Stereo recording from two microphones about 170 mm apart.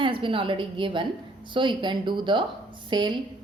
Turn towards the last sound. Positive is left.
turn(degrees=-25)  # may be behind; listen again after turning